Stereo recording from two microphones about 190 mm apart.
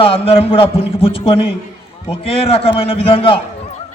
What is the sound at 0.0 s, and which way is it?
A man's voice, 30° left (ahead or behind).